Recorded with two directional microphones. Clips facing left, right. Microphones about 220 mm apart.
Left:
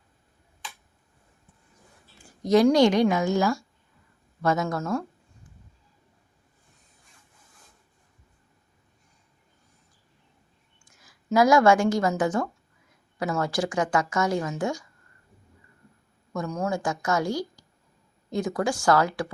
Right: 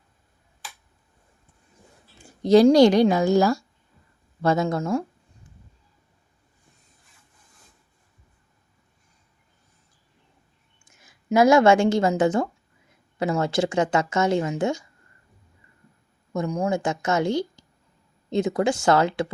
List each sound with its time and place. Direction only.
2.1 s speech: 25° right (ahead or behind)
10.8 s a woman's voice: 20° right (ahead or behind)
16.3 s speech: 20° right (ahead or behind)